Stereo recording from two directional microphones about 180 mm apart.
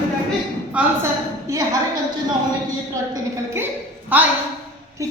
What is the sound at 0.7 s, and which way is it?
Speech, 5° right (ahead or behind).